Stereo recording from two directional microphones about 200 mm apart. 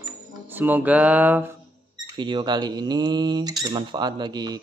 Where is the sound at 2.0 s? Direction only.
25° right (ahead or behind).